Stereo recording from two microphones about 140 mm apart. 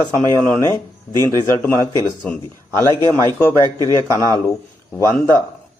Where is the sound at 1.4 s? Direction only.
15° left (ahead or behind).